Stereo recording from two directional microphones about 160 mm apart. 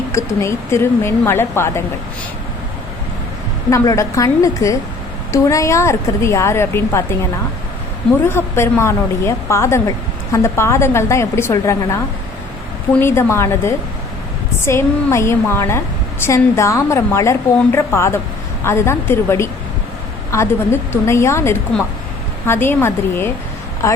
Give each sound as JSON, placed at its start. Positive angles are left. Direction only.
{"t": 0.1, "sound": "a woman's voice", "side_deg": 20}
{"t": 3.7, "sound": "a woman's voice", "side_deg": 20}
{"t": 8.3, "sound": "a woman's voice", "side_deg": 15}
{"t": 13.0, "sound": "a woman's voice", "side_deg": 15}